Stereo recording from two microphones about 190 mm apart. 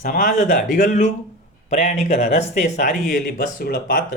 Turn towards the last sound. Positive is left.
turn(degrees=50)  # may be behind; listen again after turning